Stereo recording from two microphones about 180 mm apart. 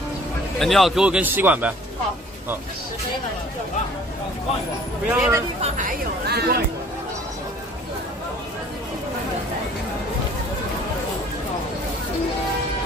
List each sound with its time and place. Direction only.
0.6 s speech: centre (ahead or behind)
5.0 s speech: 10° right (ahead or behind)
5.6 s speech: 45° right (ahead or behind)
6.2 s speech: 60° right (ahead or behind)